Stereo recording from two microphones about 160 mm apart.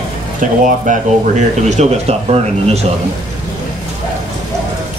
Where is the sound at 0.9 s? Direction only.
50° right (ahead or behind).